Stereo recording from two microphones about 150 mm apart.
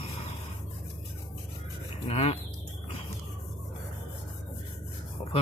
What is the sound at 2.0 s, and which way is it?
Speech, 40° left (ahead or behind).